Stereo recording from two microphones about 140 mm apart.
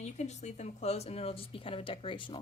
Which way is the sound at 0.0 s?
55° left (ahead or behind).